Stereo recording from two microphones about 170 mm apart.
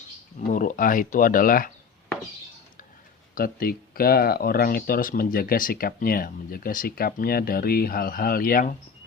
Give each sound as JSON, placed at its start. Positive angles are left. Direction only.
{"t": 0.3, "sound": "speech", "side_deg": 50}
{"t": 3.3, "sound": "speech", "side_deg": 60}